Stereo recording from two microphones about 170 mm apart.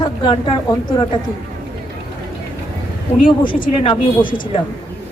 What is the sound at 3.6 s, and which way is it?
Speech, 30° left (ahead or behind).